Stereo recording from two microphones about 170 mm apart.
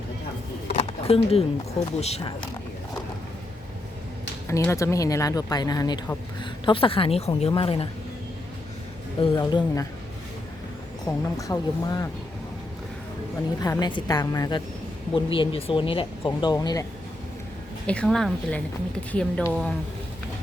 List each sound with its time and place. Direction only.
0.7 s a sound: 35° left (ahead or behind)
2.0 s speech: 40° left (ahead or behind)
4.4 s speech: 15° left (ahead or behind); by 7.9 s 35° left (ahead or behind)
9.2 s speech: 25° left (ahead or behind)
11.0 s speech: 20° left (ahead or behind)
13.6 s speech: 20° left (ahead or behind)
17.8 s a woman's voice: 5° left (ahead or behind)